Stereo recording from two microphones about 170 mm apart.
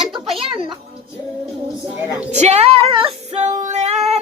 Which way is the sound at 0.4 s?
30° right (ahead or behind).